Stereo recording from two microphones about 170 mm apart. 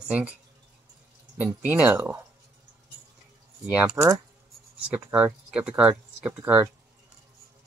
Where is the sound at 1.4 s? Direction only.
10° right (ahead or behind).